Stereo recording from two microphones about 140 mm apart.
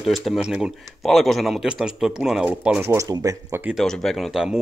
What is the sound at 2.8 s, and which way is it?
Speech, 25° right (ahead or behind).